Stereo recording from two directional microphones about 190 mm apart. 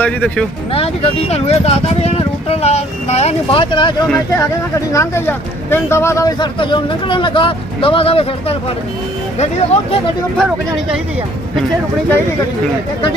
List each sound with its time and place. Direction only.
0.0 s speech: 5° left (ahead or behind)
0.7 s speech: 30° left (ahead or behind)
4.7 s speech: 15° left (ahead or behind); by 8.5 s 30° left (ahead or behind)
10.3 s speech: centre (ahead or behind)